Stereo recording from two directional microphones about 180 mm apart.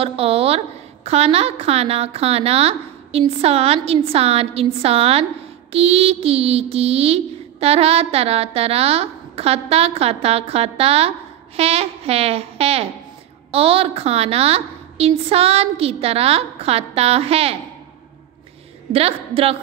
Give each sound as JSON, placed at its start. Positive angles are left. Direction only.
{"t": 0.0, "sound": "a woman's voice", "side_deg": -35}
{"t": 18.9, "sound": "a woman's voice", "side_deg": -35}